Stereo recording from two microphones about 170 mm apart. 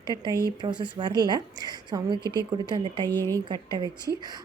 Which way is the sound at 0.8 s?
25° right (ahead or behind).